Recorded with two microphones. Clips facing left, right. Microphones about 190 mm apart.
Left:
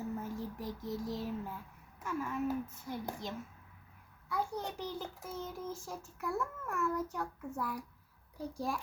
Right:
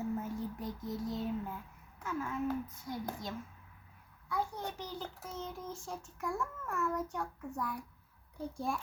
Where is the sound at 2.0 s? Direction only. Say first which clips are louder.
Even; 5° left (ahead or behind).